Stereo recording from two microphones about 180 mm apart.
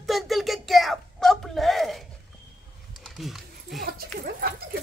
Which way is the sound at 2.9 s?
Centre (ahead or behind).